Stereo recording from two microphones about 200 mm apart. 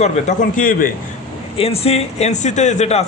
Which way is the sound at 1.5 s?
30° left (ahead or behind).